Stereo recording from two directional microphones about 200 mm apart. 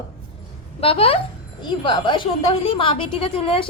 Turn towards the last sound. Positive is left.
turn(degrees=25)  # may be behind; listen again after turning